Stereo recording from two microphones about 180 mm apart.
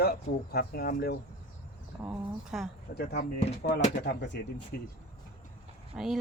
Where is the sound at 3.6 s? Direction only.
70° left (ahead or behind).